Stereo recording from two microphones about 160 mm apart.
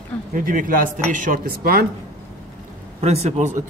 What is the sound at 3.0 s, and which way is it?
Speech, 45° right (ahead or behind).